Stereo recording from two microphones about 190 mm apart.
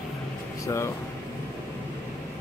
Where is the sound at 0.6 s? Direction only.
15° left (ahead or behind).